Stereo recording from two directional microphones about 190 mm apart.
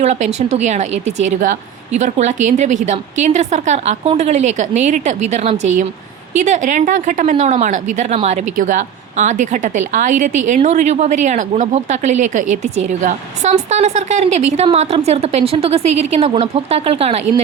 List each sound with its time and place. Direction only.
0.0 s a woman's voice: 35° right (ahead or behind)